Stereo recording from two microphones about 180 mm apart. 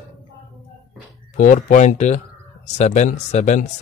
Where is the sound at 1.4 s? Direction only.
45° left (ahead or behind).